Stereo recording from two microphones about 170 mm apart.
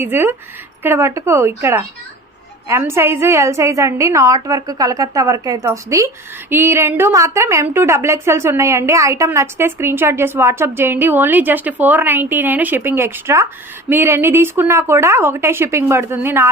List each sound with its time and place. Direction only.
0.0 s a woman's voice: 15° right (ahead or behind)